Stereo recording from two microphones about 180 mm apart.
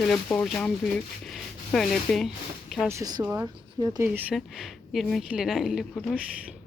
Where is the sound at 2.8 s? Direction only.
20° right (ahead or behind).